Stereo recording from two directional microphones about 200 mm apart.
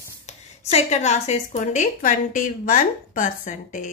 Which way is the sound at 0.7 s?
35° left (ahead or behind).